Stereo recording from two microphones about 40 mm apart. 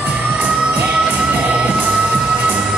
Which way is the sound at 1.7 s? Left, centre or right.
Right.